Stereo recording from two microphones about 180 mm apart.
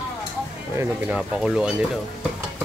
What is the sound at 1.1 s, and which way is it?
Speech, 5° right (ahead or behind).